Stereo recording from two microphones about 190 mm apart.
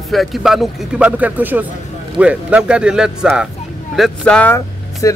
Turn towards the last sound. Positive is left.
turn(degrees=15)  # may be behind; listen again after turning